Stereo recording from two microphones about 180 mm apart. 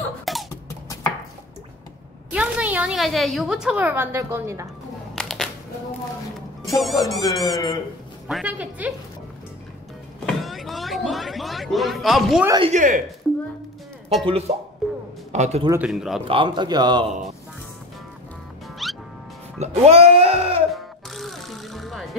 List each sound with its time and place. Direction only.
0.2 s music: centre (ahead or behind)
2.3 s a woman's voice: 5° right (ahead or behind)
5.1 s crushing: centre (ahead or behind)
6.7 s a woman's voice: centre (ahead or behind)
10.2 s a sound: centre (ahead or behind)
12.4 s a man's voice: 25° right (ahead or behind)
12.7 s speech: 45° right (ahead or behind)
13.2 s music: centre (ahead or behind)
14.5 s speech: 35° right (ahead or behind)
15.7 s speech: 5° right (ahead or behind)
16.3 s a man's voice: 25° right (ahead or behind)
18.8 s music: centre (ahead or behind)
19.6 s speech: 35° right (ahead or behind)
20.7 s music: centre (ahead or behind)